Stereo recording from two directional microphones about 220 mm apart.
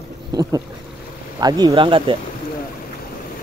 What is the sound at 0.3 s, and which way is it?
Speech, 15° right (ahead or behind).